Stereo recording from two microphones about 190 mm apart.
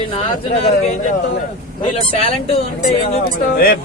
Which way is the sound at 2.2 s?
30° left (ahead or behind).